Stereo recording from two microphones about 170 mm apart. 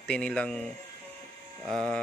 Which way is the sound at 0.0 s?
5° left (ahead or behind).